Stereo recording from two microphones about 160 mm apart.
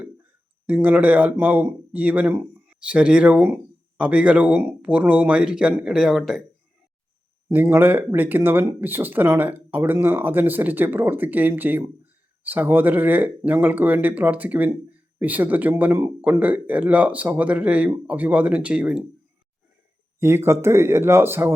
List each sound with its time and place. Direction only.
0.7 s speech: 10° right (ahead or behind)
7.5 s speech: 10° right (ahead or behind)
20.1 s speech: 15° right (ahead or behind)